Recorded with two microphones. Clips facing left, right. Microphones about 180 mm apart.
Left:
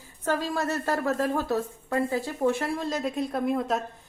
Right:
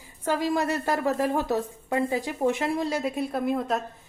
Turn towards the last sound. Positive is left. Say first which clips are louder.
# even
turn(degrees=0)  # may be behind; listen again after turning